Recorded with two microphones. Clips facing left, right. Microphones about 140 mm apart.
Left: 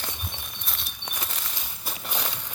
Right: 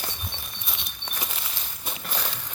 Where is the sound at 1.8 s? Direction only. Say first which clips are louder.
Even; 10° left (ahead or behind).